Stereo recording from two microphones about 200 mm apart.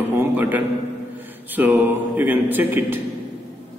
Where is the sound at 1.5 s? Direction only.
10° right (ahead or behind).